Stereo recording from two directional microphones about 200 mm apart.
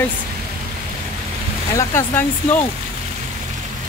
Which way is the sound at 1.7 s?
10° left (ahead or behind).